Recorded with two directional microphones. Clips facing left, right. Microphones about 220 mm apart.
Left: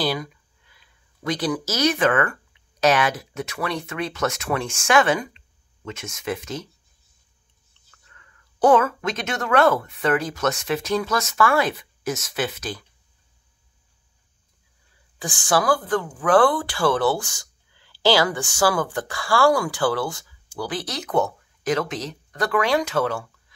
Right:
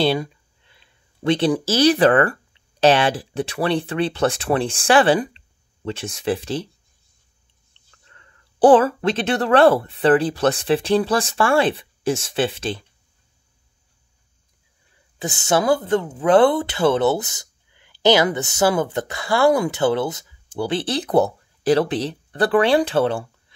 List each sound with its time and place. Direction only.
0.0 s speech: 30° right (ahead or behind)
7.7 s speech: 30° right (ahead or behind)
15.1 s speech: 25° right (ahead or behind)